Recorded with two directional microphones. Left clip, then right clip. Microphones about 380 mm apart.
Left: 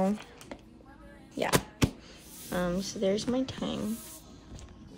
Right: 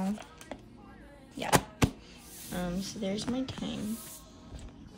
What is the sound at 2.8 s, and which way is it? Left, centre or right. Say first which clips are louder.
A woman's voice: left 6 dB; centre.